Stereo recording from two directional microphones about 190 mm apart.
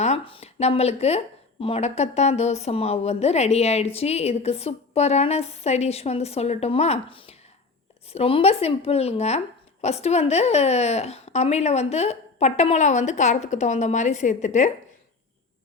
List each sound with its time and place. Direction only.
0.0 s speech: 30° left (ahead or behind)